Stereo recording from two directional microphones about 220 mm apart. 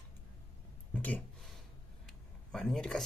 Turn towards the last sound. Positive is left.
turn(degrees=0)  # may be behind; listen again after turning